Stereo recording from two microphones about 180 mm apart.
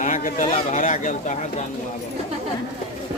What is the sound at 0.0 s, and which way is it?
Speech, 45° left (ahead or behind).